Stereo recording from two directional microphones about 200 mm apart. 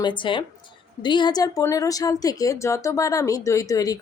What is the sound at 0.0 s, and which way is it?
Speech, 25° left (ahead or behind).